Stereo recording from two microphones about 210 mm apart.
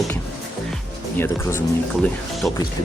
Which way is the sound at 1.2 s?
10° left (ahead or behind).